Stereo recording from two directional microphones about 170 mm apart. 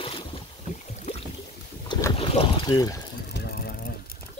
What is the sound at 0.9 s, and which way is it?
Boat, 40° left (ahead or behind).